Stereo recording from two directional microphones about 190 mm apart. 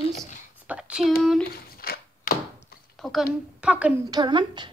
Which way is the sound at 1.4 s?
50° left (ahead or behind).